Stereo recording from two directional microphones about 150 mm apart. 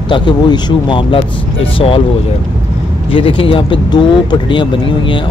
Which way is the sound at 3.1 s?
35° left (ahead or behind).